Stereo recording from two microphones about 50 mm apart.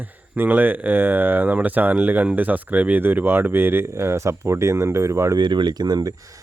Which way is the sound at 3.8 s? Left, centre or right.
Right.